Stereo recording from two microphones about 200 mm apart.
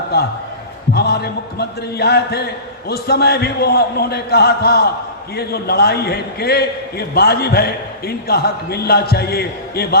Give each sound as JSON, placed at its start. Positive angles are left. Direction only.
{"t": 0.9, "sound": "a man's voice", "side_deg": 55}